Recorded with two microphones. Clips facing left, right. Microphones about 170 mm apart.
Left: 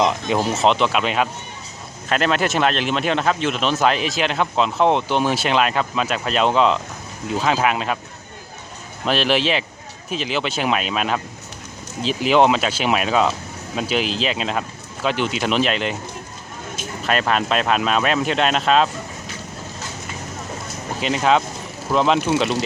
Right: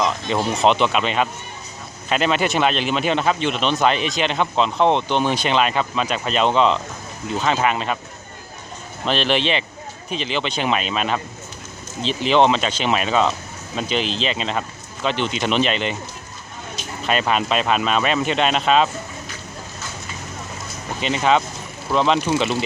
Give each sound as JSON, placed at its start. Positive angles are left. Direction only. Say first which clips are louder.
{"t": 0.3, "sound": "a man's voice", "louder": "even", "side_deg": 5}
{"t": 9.0, "sound": "a man's voice", "louder": "left 1 dB", "side_deg": 5}
{"t": 17.1, "sound": "a man's voice", "louder": "even", "side_deg": 0}
{"t": 21.0, "sound": "a man's voice", "louder": "even", "side_deg": 0}